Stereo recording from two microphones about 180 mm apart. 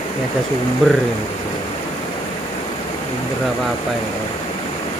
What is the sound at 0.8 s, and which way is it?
Speech, 5° left (ahead or behind).